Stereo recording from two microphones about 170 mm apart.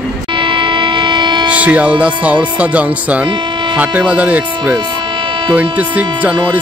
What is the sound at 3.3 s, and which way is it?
Music, 30° right (ahead or behind).